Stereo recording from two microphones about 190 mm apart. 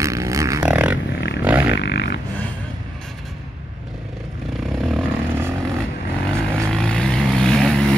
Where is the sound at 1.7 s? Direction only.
65° left (ahead or behind).